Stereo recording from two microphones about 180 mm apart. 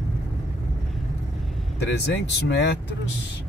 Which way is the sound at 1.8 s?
75° left (ahead or behind).